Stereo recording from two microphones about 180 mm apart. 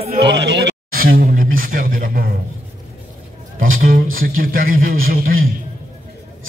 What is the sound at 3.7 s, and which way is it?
Speech, 50° right (ahead or behind).